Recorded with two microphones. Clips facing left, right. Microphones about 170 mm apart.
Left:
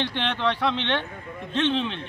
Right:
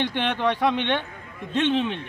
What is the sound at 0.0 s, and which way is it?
A man's voice, 15° right (ahead or behind).